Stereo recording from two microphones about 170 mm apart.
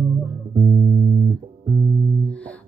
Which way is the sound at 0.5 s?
35° right (ahead or behind).